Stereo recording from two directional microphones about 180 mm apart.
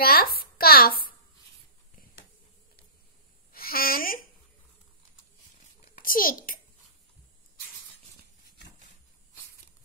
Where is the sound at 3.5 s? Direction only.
55° left (ahead or behind).